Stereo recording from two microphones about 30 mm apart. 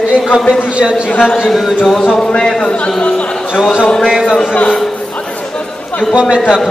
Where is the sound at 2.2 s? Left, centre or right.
Left.